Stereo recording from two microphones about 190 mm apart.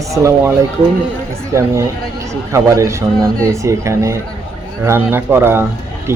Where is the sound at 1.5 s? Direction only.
15° right (ahead or behind).